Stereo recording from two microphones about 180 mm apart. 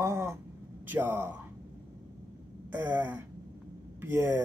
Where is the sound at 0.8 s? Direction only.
15° right (ahead or behind).